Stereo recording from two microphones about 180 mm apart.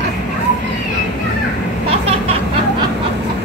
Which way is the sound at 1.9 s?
35° right (ahead or behind).